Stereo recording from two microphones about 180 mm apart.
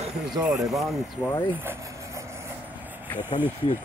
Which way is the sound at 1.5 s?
10° right (ahead or behind).